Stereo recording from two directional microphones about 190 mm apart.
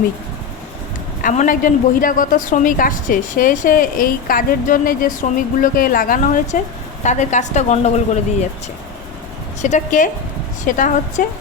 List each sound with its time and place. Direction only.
1.2 s a woman's voice: 40° left (ahead or behind)
9.6 s a woman's voice: 40° left (ahead or behind)